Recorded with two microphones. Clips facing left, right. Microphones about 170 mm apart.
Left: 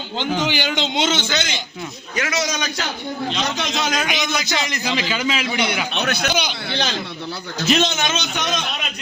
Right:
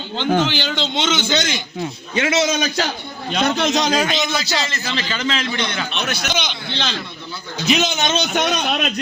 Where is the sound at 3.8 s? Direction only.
35° right (ahead or behind).